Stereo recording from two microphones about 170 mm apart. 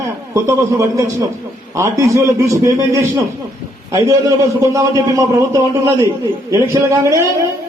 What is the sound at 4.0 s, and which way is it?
A man's voice, 20° right (ahead or behind).